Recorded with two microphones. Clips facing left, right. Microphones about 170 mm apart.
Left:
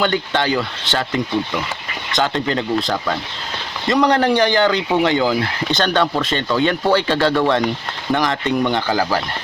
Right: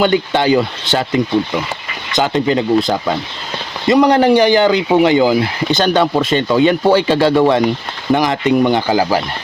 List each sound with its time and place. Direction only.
0.0 s speech: 15° right (ahead or behind)